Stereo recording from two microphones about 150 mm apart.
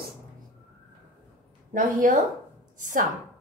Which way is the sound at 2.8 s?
55° right (ahead or behind).